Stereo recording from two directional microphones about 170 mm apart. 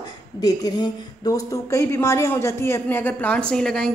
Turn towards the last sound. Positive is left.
turn(degrees=5)  # may be behind; listen again after turning